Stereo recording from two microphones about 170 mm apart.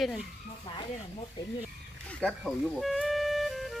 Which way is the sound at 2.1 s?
5° left (ahead or behind).